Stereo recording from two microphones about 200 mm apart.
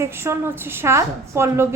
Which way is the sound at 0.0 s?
10° right (ahead or behind).